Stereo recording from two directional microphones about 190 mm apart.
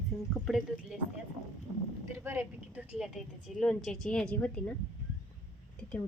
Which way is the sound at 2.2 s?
10° right (ahead or behind).